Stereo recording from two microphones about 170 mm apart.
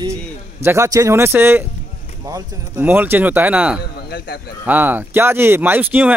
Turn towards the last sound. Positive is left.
turn(degrees=-10)  # may be behind; listen again after turning